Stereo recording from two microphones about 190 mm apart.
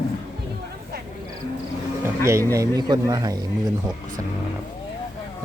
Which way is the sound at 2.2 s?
15° right (ahead or behind).